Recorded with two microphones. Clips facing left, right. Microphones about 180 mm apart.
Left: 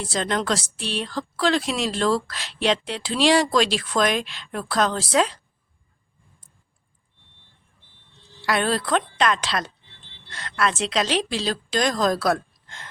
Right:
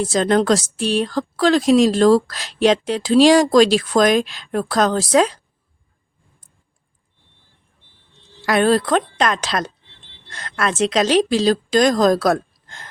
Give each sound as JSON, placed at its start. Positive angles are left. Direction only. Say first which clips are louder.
{"t": 0.0, "sound": "speech", "louder": "right 9 dB", "side_deg": -45}
{"t": 8.4, "sound": "speech", "louder": "right 7 dB", "side_deg": -45}